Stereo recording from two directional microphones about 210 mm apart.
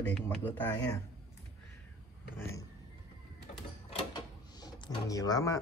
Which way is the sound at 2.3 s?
10° left (ahead or behind).